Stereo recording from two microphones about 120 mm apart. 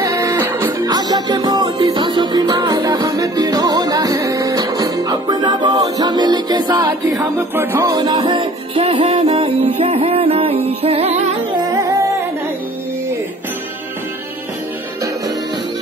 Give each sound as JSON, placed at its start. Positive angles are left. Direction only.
{"t": 0.0, "sound": "music", "side_deg": -25}
{"t": 0.8, "sound": "music", "side_deg": -35}
{"t": 7.8, "sound": "music", "side_deg": -35}
{"t": 8.3, "sound": "music", "side_deg": -50}